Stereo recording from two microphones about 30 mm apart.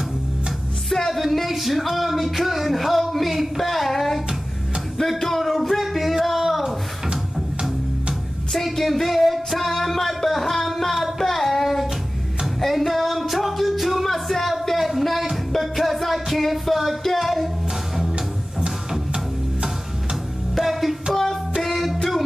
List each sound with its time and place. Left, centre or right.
0.8 s music: centre
5.2 s music: centre
8.5 s music: centre
11.1 s a sound: centre
12.5 s music: centre
14.0 s a sound: centre
15.6 s music: centre
18.9 s music: right
20.5 s music: centre